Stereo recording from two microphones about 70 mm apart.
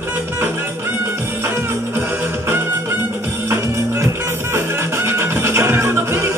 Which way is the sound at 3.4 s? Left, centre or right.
Right.